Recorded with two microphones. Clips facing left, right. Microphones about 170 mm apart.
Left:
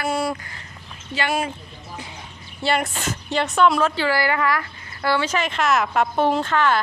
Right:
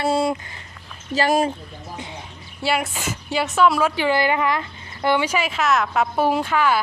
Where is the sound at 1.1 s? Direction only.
40° right (ahead or behind).